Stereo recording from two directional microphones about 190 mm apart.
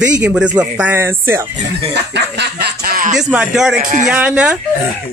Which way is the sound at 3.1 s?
Centre (ahead or behind).